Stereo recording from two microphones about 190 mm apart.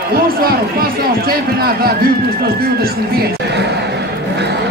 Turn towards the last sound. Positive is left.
turn(degrees=-55)  # may be behind; listen again after turning